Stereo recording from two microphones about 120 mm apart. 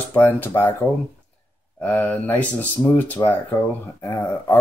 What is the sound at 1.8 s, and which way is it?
Speech, 15° left (ahead or behind).